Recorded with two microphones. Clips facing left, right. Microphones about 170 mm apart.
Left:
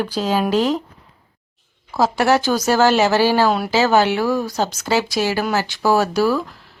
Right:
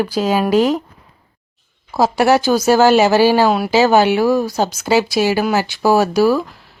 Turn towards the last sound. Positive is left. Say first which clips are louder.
# right 4 dB
turn(degrees=-10)  # may be behind; listen again after turning